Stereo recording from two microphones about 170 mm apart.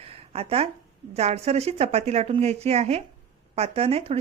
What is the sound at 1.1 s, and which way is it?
Speech, 40° right (ahead or behind).